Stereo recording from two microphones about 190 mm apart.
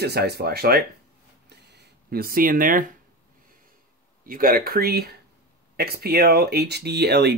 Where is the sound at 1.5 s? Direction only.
60° right (ahead or behind).